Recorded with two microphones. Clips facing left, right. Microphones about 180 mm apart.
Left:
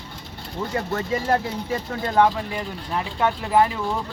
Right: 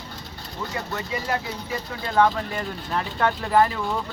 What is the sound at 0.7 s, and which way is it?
Speech, 50° left (ahead or behind).